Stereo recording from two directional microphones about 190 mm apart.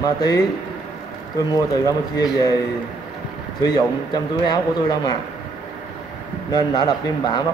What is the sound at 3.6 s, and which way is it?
A man's voice, 20° left (ahead or behind).